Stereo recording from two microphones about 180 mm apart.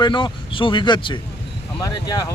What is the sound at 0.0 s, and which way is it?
Speech, 25° left (ahead or behind).